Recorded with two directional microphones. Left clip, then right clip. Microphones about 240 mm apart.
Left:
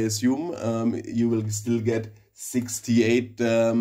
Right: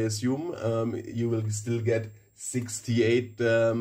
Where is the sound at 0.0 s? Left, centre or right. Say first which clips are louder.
Left 4 dB; left.